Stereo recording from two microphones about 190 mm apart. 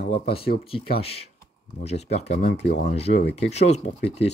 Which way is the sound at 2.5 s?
65° left (ahead or behind).